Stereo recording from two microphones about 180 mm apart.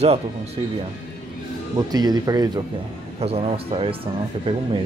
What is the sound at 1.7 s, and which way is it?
Speech, 20° right (ahead or behind).